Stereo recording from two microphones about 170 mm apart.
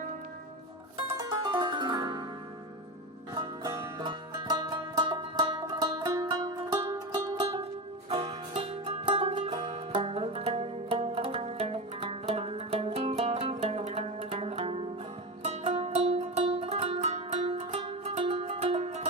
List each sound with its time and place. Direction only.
0.9 s music: 25° right (ahead or behind)
3.3 s music: 25° right (ahead or behind); by 19.0 s 40° right (ahead or behind)